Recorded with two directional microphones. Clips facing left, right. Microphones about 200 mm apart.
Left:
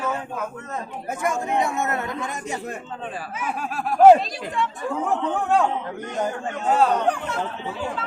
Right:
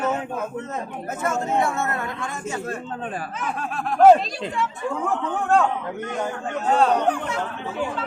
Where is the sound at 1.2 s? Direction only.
15° left (ahead or behind).